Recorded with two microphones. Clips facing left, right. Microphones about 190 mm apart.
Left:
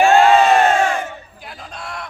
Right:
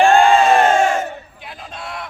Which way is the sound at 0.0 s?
5° left (ahead or behind).